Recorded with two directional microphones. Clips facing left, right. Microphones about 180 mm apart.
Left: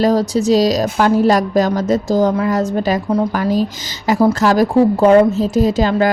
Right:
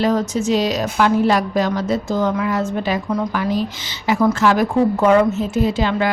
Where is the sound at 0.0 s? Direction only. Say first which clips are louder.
Left 4 dB; 35° left (ahead or behind).